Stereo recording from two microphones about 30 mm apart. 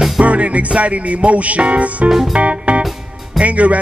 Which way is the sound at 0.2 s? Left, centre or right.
Right.